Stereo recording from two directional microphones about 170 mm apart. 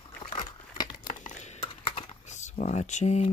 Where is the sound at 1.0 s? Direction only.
50° left (ahead or behind).